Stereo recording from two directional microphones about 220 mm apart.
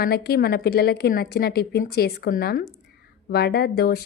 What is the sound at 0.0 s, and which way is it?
Speech, 45° left (ahead or behind).